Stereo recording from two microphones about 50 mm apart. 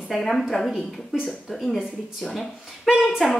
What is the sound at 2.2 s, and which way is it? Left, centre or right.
Speech, centre.